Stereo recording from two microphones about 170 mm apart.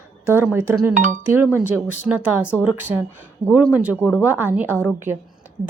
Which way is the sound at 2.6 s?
10° right (ahead or behind).